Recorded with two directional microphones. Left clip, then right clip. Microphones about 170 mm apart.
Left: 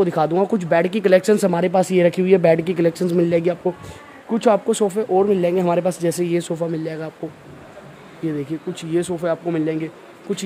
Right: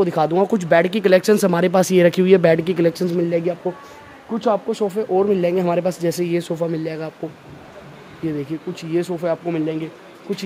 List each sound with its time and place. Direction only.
0.0 s speech: 5° left (ahead or behind)
3.1 s speech: 20° left (ahead or behind)
4.3 s speech: 35° left (ahead or behind)
4.8 s speech: 15° left (ahead or behind)
6.6 s speech: 5° right (ahead or behind)
8.3 s speech: 10° left (ahead or behind)